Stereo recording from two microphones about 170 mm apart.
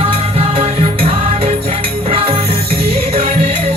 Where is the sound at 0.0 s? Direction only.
35° right (ahead or behind).